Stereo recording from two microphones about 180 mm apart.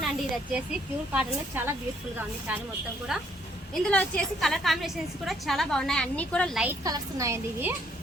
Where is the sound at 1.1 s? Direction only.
10° right (ahead or behind).